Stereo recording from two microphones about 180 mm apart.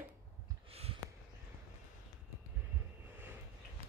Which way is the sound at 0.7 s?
35° right (ahead or behind).